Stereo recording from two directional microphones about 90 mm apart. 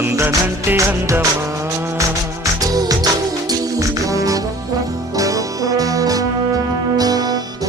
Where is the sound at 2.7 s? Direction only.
45° right (ahead or behind).